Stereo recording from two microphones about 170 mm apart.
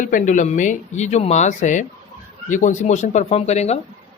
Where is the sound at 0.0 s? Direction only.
50° left (ahead or behind).